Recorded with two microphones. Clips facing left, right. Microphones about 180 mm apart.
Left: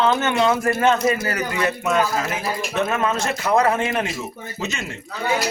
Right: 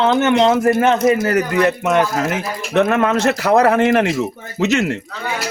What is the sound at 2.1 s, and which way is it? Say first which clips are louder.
A man's voice: right 4 dB; 65° right (ahead or behind).